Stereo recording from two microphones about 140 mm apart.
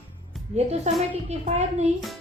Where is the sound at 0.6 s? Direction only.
50° right (ahead or behind).